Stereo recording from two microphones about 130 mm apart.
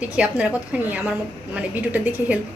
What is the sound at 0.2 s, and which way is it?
A woman's voice, 10° right (ahead or behind).